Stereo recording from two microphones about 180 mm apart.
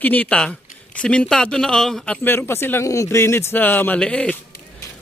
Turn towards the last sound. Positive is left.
turn(degrees=5)  # may be behind; listen again after turning